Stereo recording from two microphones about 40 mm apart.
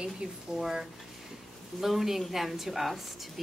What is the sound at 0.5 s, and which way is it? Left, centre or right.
A woman's voice, centre.